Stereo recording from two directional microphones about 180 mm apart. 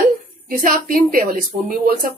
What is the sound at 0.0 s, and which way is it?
Speech, 50° right (ahead or behind).